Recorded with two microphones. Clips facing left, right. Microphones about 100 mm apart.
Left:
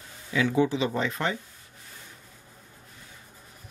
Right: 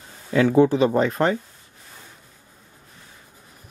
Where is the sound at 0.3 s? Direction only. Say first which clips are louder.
Right 8 dB; 45° right (ahead or behind).